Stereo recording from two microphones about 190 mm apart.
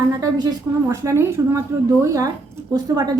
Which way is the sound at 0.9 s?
15° right (ahead or behind).